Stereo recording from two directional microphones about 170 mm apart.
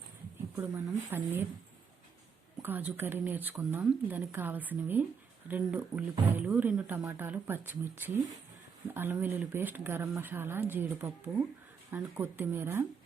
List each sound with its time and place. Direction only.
1.1 s speech: 15° right (ahead or behind)
2.6 s speech: 10° right (ahead or behind)